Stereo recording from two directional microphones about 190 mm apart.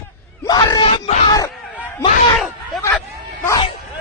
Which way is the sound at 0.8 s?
30° left (ahead or behind).